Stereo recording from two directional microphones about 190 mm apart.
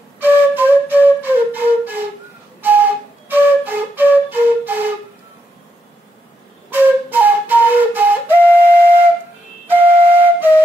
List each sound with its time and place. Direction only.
0.2 s flute: 10° right (ahead or behind)
3.3 s flute: 10° right (ahead or behind)
6.7 s flute: 10° right (ahead or behind)